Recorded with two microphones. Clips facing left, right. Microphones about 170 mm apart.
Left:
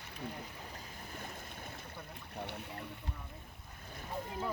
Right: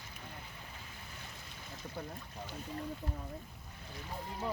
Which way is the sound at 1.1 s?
50° left (ahead or behind).